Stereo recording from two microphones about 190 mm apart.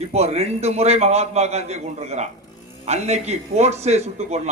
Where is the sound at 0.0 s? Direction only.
35° right (ahead or behind).